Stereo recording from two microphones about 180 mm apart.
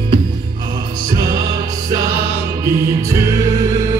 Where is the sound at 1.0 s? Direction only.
20° right (ahead or behind).